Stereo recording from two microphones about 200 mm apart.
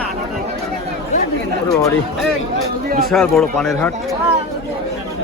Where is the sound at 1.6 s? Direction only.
15° left (ahead or behind).